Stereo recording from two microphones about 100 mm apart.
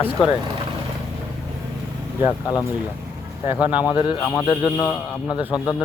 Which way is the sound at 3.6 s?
15° right (ahead or behind).